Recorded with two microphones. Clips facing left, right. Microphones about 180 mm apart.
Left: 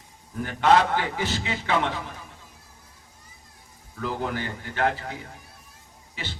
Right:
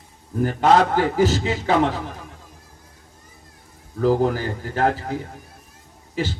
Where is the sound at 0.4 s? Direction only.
40° right (ahead or behind).